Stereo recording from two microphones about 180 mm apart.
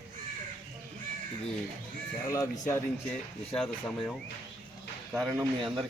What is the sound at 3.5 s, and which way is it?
Speech, centre (ahead or behind).